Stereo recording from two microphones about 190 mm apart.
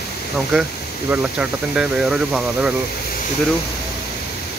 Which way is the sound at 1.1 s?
5° right (ahead or behind).